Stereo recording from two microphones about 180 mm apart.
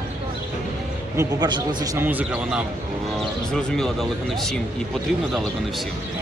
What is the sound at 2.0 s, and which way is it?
Speech, 10° right (ahead or behind).